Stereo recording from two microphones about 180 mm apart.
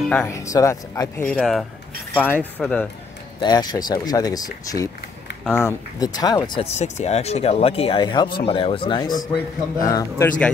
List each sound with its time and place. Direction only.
0.3 s speech: 15° left (ahead or behind)
1.2 s speech: 5° left (ahead or behind)
3.3 s speech: 20° left (ahead or behind)
6.8 s speech: 40° left (ahead or behind); by 10.3 s 15° left (ahead or behind)